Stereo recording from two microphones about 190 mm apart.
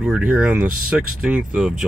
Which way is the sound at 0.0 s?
10° right (ahead or behind).